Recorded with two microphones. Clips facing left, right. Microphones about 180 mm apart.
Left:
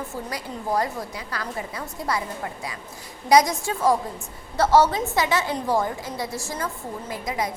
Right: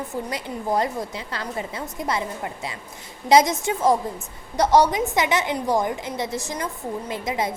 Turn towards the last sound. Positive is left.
turn(degrees=-25)  # may be behind; listen again after turning